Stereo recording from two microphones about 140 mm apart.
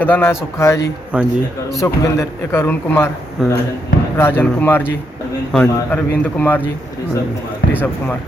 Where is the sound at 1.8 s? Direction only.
20° left (ahead or behind).